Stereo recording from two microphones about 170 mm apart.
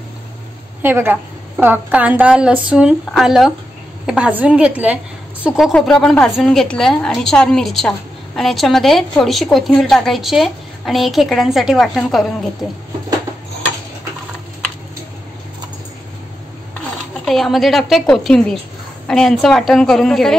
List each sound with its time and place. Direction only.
0.8 s speech: 10° right (ahead or behind)
5.7 s a woman's voice: 5° left (ahead or behind)
17.2 s a woman's voice: centre (ahead or behind)